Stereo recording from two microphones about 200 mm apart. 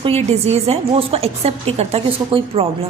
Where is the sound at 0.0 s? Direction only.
30° right (ahead or behind).